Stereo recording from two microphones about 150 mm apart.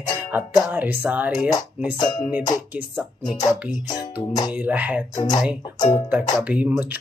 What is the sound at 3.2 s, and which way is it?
Music, 25° left (ahead or behind).